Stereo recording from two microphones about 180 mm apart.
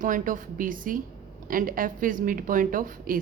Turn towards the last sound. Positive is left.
turn(degrees=-50)  # may be behind; listen again after turning